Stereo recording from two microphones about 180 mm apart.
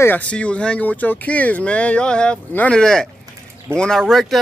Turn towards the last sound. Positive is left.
turn(degrees=0)  # may be behind; listen again after turning